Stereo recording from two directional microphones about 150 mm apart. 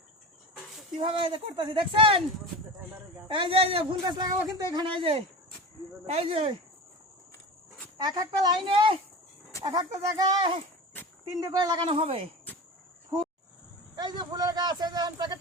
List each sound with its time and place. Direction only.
0.9 s speech: 35° right (ahead or behind)
3.2 s speech: 35° right (ahead or behind)
8.0 s a woman's voice: 25° right (ahead or behind)
13.9 s a man's voice: 30° right (ahead or behind)